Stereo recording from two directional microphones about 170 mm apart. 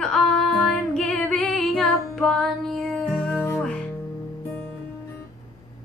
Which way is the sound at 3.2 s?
15° left (ahead or behind).